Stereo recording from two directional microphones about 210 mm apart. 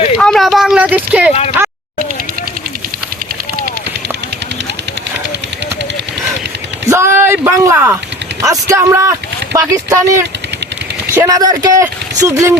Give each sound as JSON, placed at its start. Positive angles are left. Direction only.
{"t": 0.2, "sound": "a sound", "side_deg": 5}
{"t": 1.3, "sound": "speech", "side_deg": 30}
{"t": 6.9, "sound": "speech", "side_deg": -10}